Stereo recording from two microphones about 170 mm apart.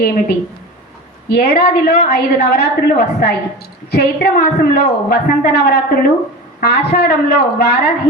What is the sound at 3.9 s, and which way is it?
A woman's voice, 65° left (ahead or behind).